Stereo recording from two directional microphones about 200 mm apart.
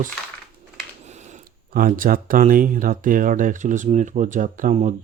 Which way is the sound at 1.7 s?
45° right (ahead or behind).